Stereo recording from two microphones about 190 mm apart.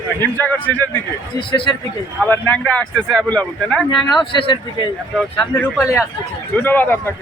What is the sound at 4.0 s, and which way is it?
Speech, 25° left (ahead or behind).